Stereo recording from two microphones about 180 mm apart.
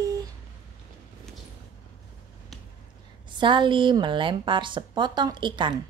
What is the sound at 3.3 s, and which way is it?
A woman's voice, 25° right (ahead or behind).